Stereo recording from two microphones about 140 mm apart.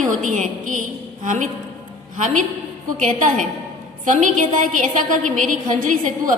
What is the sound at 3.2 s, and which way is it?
Speech, 65° right (ahead or behind).